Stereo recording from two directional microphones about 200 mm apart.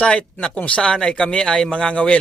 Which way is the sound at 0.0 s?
5° left (ahead or behind).